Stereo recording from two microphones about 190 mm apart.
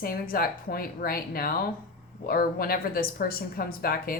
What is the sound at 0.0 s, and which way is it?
A woman's voice, 50° left (ahead or behind).